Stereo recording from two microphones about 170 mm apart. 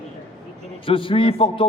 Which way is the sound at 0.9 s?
30° left (ahead or behind).